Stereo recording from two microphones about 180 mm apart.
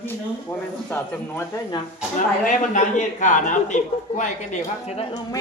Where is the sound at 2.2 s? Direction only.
45° left (ahead or behind).